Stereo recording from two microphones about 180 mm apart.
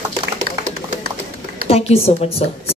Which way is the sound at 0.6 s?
45° right (ahead or behind).